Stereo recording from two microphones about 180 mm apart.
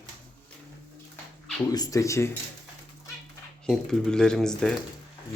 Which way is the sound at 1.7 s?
20° left (ahead or behind).